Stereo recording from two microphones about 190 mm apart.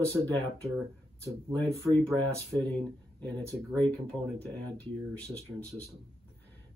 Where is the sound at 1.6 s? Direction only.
5° left (ahead or behind).